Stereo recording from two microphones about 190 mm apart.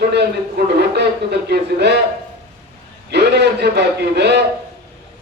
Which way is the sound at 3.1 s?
60° right (ahead or behind).